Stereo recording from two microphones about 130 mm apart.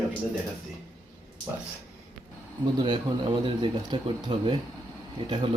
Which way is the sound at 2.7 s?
40° right (ahead or behind).